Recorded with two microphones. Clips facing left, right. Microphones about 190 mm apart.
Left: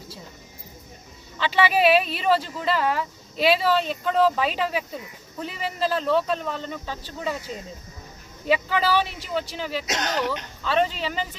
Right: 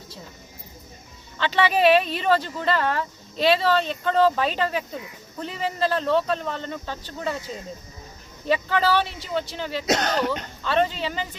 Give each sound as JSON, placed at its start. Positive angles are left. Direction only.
{"t": 1.4, "sound": "speech", "side_deg": 5}
{"t": 8.4, "sound": "speech", "side_deg": 10}
{"t": 9.8, "sound": "speech", "side_deg": -30}
{"t": 10.6, "sound": "speech", "side_deg": 5}